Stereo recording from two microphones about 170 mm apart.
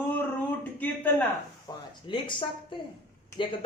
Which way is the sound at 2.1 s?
30° left (ahead or behind).